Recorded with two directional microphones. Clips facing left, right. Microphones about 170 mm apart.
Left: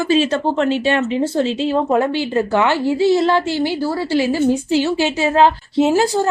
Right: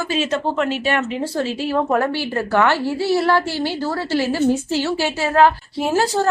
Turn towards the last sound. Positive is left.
turn(degrees=15)  # may be behind; listen again after turning